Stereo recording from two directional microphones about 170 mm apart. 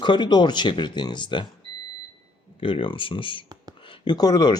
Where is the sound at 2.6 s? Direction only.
30° left (ahead or behind).